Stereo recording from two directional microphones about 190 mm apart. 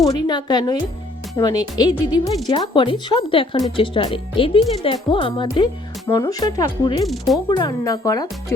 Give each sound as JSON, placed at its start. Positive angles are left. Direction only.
{"t": 0.1, "sound": "speech", "side_deg": 20}
{"t": 7.0, "sound": "speech", "side_deg": 0}
{"t": 7.5, "sound": "speech", "side_deg": 20}